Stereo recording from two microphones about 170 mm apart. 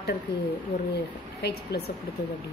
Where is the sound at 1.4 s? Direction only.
70° left (ahead or behind).